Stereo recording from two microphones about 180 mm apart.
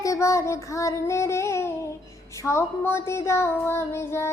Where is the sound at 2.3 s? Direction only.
15° left (ahead or behind).